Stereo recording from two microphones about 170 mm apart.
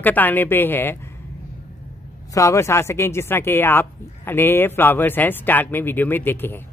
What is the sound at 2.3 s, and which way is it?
Speech, 20° left (ahead or behind).